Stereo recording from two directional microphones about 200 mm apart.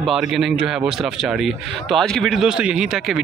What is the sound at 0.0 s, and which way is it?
A man's voice, centre (ahead or behind).